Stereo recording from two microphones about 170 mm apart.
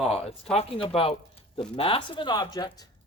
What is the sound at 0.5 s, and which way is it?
Speech, 35° left (ahead or behind).